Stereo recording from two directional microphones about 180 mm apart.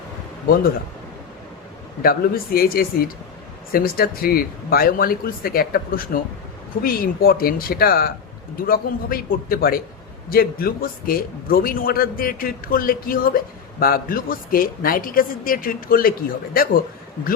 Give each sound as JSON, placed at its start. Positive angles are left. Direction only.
{"t": 2.0, "sound": "a man's voice", "side_deg": 55}